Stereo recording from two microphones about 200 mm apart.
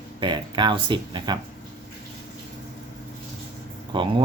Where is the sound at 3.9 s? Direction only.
25° right (ahead or behind).